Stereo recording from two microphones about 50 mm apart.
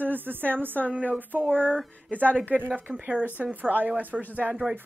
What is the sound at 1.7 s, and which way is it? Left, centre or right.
Speech, left.